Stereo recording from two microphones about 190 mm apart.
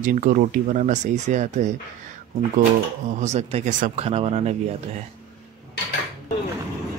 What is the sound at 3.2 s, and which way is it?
Speech, 35° right (ahead or behind).